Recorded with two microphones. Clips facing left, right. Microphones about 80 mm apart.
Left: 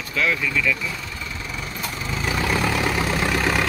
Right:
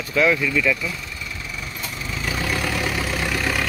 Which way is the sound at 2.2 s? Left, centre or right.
Left.